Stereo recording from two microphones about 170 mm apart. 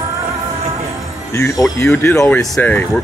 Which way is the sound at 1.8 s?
10° left (ahead or behind).